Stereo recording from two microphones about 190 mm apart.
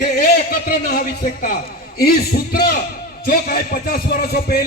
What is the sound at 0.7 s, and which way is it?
A man's voice, 50° left (ahead or behind).